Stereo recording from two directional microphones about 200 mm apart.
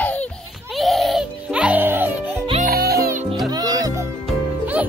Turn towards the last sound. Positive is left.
turn(degrees=-10)  # may be behind; listen again after turning